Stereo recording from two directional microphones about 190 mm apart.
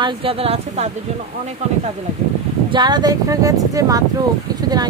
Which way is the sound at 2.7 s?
20° right (ahead or behind).